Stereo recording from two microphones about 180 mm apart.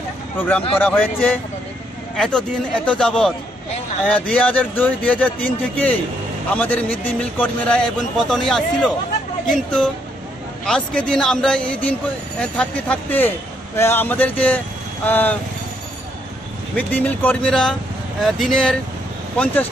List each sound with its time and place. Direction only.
0.4 s speech: 10° left (ahead or behind)
16.7 s speech: 10° left (ahead or behind)